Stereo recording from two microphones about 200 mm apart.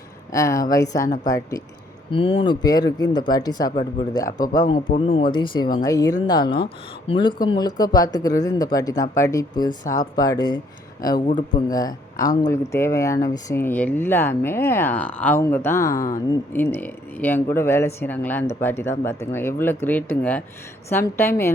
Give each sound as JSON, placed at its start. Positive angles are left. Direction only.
{"t": 0.3, "sound": "speech", "side_deg": 15}